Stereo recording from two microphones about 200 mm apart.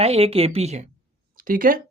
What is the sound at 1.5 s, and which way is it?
Speech, 45° right (ahead or behind).